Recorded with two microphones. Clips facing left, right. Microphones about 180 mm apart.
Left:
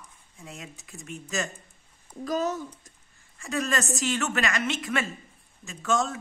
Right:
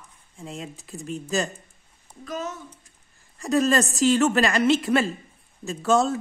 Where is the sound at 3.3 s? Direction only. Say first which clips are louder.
Right 8 dB; 35° right (ahead or behind).